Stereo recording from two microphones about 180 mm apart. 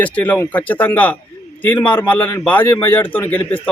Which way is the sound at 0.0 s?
10° left (ahead or behind).